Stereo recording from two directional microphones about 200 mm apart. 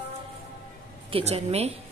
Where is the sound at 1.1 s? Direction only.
30° right (ahead or behind).